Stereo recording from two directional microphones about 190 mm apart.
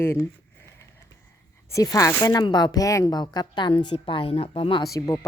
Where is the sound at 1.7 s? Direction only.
15° left (ahead or behind).